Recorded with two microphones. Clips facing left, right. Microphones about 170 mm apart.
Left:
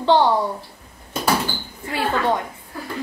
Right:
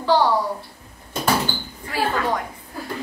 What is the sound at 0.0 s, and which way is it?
Speech, 25° left (ahead or behind).